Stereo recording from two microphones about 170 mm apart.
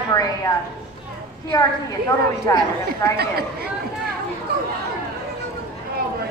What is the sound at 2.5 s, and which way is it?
Speech, 20° left (ahead or behind).